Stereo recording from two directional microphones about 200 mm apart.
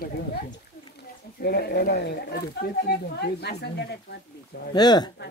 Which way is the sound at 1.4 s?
50° left (ahead or behind).